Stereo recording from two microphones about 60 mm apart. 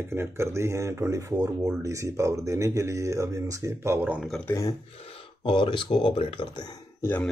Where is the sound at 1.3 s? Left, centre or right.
Right.